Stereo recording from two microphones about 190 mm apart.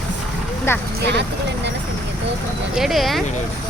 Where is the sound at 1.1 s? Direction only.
65° right (ahead or behind).